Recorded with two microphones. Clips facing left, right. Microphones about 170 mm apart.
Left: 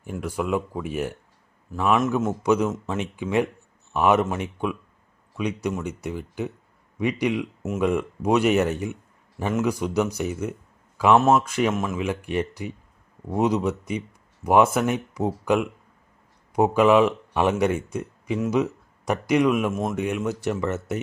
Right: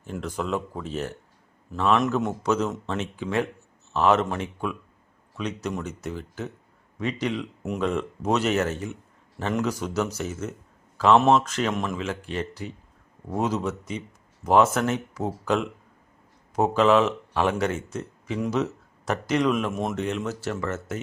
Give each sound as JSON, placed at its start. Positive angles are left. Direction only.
{"t": 0.0, "sound": "a man's voice", "side_deg": 10}